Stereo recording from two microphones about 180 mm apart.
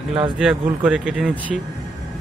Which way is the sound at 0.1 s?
30° right (ahead or behind).